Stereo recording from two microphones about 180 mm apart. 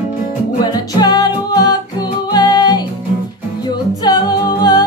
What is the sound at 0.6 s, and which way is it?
Music, 20° left (ahead or behind).